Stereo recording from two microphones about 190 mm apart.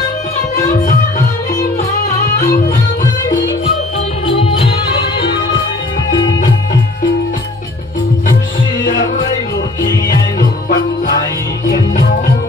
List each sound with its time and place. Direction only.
0.6 s music: 45° left (ahead or behind)
4.3 s music: 30° left (ahead or behind)
8.8 s music: 50° left (ahead or behind)